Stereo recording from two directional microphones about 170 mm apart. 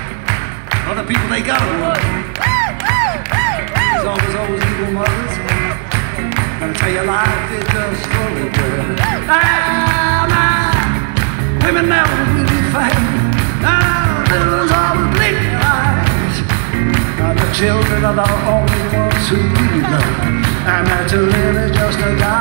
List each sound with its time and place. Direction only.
9.3 s music: 40° left (ahead or behind)
11.7 s music: 40° left (ahead or behind)
20.6 s music: 35° left (ahead or behind)